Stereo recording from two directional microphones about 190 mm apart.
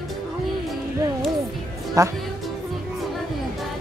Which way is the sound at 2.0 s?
15° right (ahead or behind).